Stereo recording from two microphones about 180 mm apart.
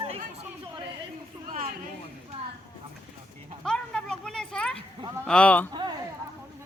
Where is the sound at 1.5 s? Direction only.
50° right (ahead or behind).